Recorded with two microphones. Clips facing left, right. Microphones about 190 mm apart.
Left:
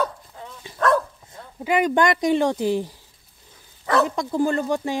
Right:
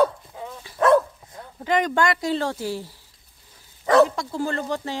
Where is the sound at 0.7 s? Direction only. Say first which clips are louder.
Left 3 dB; 20° left (ahead or behind).